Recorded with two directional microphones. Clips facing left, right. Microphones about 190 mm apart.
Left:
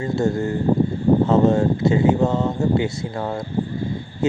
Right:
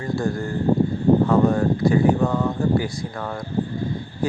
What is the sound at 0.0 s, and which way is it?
A man's voice, 25° left (ahead or behind).